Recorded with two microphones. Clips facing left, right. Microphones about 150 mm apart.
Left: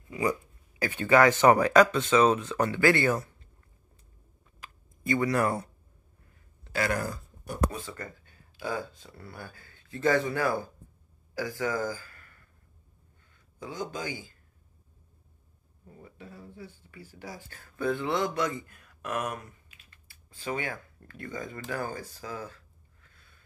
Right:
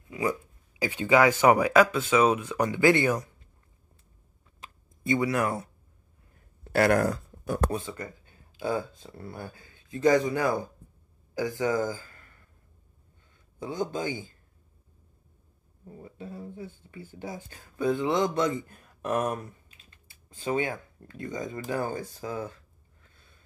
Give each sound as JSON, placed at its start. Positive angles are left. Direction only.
{"t": 0.7, "sound": "speech", "side_deg": -10}
{"t": 4.6, "sound": "a sound", "side_deg": -25}
{"t": 5.2, "sound": "speech", "side_deg": 0}
{"t": 6.6, "sound": "speech", "side_deg": -60}
{"t": 7.7, "sound": "speech", "side_deg": -20}
{"t": 13.6, "sound": "speech", "side_deg": -25}
{"t": 15.9, "sound": "speech", "side_deg": -25}